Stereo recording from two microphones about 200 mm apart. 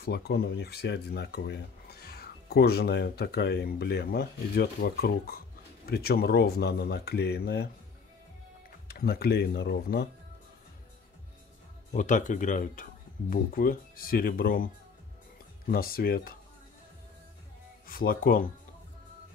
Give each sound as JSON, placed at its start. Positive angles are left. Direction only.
{"t": 0.0, "sound": "speech", "side_deg": 55}
{"t": 8.8, "sound": "speech", "side_deg": 50}
{"t": 11.9, "sound": "speech", "side_deg": 40}
{"t": 17.8, "sound": "speech", "side_deg": 45}